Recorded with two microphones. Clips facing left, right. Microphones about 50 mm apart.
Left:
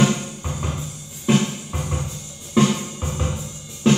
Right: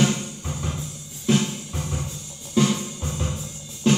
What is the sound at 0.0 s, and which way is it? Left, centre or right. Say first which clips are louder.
Music: left 3 dB; left.